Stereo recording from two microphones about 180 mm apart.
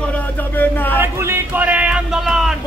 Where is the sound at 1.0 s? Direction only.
10° right (ahead or behind).